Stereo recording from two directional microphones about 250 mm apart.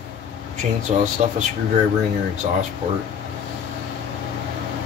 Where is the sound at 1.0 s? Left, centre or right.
Right.